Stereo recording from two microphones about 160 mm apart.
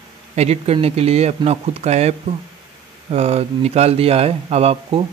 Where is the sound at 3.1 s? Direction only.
40° right (ahead or behind).